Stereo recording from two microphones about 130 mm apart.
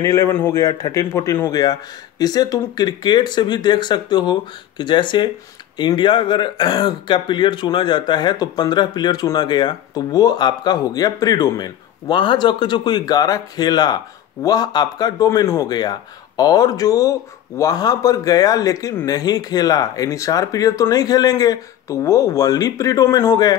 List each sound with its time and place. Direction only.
0.0 s a man's voice: 25° left (ahead or behind)